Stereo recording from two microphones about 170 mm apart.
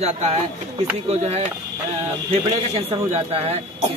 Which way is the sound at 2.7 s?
35° right (ahead or behind).